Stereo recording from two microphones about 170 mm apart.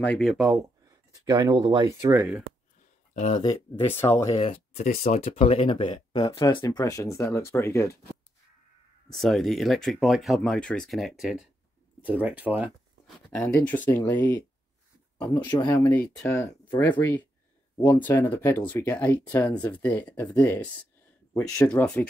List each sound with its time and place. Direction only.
0.0 s speech: 5° left (ahead or behind)
1.2 s speech: 25° right (ahead or behind)
3.7 s speech: 15° left (ahead or behind)
4.4 s speech: 40° left (ahead or behind); by 8.2 s 15° left (ahead or behind)
9.1 s speech: centre (ahead or behind)
13.4 s speech: 10° left (ahead or behind)
15.7 s speech: 10° left (ahead or behind)
17.7 s speech: 25° left (ahead or behind)
18.0 s speech: 10° left (ahead or behind)